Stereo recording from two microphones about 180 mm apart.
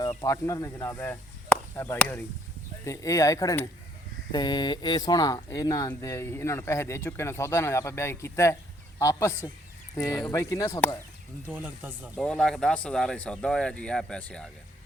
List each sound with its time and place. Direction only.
0.3 s speech: 15° left (ahead or behind)
11.5 s speech: 10° right (ahead or behind)
12.1 s speech: 5° left (ahead or behind)